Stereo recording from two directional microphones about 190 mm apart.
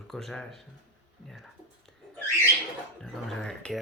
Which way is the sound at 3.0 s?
5° left (ahead or behind).